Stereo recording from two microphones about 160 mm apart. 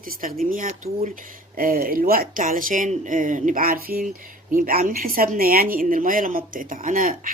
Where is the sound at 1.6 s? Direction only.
65° right (ahead or behind).